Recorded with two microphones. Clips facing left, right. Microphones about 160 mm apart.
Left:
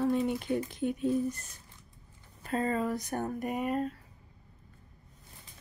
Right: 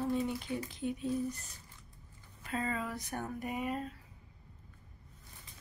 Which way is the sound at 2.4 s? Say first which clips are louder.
Left 6 dB; 40° left (ahead or behind).